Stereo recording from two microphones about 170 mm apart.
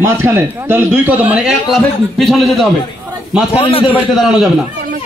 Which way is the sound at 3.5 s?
30° left (ahead or behind).